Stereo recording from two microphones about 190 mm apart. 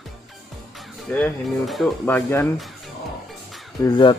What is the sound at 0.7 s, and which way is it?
Speech, 5° left (ahead or behind).